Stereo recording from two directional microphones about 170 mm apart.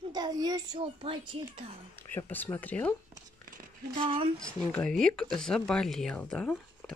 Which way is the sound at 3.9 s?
30° right (ahead or behind).